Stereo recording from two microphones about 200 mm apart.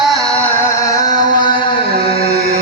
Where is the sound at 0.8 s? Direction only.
15° left (ahead or behind).